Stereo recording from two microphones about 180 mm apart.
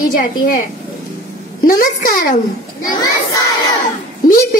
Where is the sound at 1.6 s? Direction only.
50° left (ahead or behind).